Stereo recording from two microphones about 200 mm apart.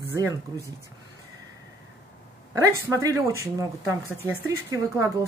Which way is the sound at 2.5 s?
15° right (ahead or behind).